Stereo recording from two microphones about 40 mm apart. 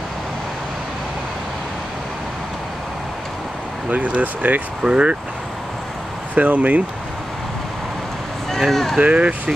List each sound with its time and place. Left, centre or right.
3.9 s speech: right
4.8 s speech: right
6.3 s speech: right
8.5 s vehicle: centre
9.0 s speech: right